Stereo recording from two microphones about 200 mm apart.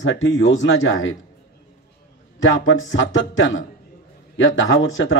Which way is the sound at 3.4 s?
70° left (ahead or behind).